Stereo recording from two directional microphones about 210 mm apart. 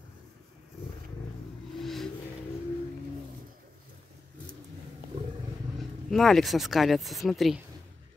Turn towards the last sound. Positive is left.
turn(degrees=0)  # may be behind; listen again after turning